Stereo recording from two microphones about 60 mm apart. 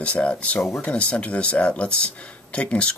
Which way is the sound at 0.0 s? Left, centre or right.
Centre.